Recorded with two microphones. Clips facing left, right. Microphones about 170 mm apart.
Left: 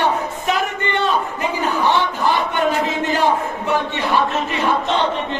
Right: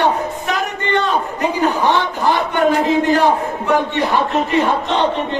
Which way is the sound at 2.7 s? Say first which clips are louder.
Right 6 dB; 20° left (ahead or behind).